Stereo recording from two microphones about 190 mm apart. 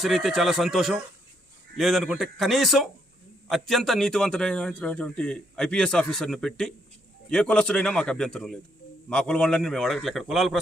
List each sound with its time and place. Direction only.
0.0 s a man's voice: centre (ahead or behind)